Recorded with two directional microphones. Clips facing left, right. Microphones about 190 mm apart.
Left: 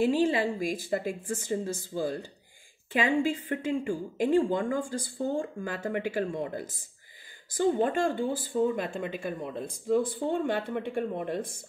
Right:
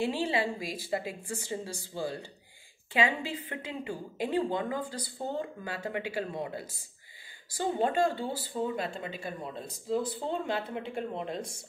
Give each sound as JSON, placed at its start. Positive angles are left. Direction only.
{"t": 0.0, "sound": "a woman's voice", "side_deg": 45}
{"t": 2.9, "sound": "a woman's voice", "side_deg": 45}